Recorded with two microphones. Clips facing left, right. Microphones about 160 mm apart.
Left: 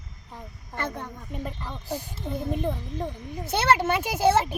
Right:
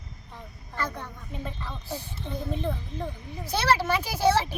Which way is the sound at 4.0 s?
55° left (ahead or behind).